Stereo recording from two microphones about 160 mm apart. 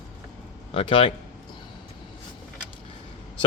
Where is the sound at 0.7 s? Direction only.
35° left (ahead or behind).